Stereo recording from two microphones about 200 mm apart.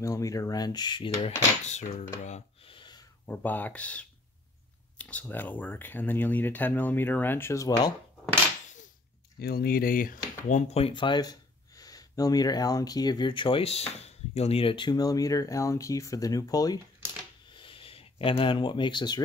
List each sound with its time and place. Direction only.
0.0 s speech: 15° left (ahead or behind)
1.7 s speech: 35° left (ahead or behind)
2.2 s a sound: 30° left (ahead or behind)
3.3 s speech: 10° left (ahead or behind)
9.4 s speech: 50° left (ahead or behind)
10.7 s speech: 25° left (ahead or behind)
17.5 s a sound: 25° left (ahead or behind)